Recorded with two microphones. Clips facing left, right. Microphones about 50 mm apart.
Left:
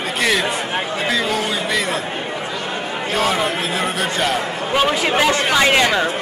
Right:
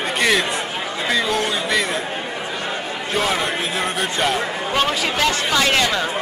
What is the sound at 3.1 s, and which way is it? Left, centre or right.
Speech, centre.